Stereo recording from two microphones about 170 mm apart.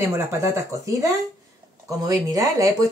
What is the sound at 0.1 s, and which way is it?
Speech, 15° right (ahead or behind).